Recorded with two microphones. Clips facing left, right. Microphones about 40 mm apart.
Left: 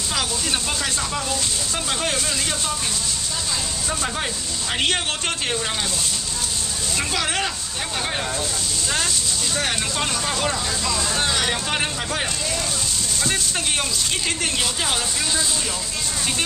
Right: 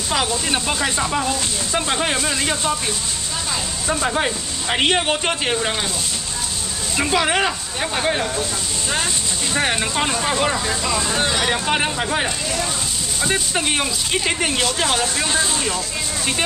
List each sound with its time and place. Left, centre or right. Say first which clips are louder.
0.1 s speech: right 5 dB; centre
3.8 s speech: right 8 dB; right
7.0 s speech: right 6 dB; centre
9.5 s speech: right 6 dB; right